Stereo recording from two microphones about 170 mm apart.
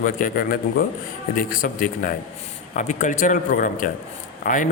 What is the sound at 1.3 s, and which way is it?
A man's voice, 55° left (ahead or behind).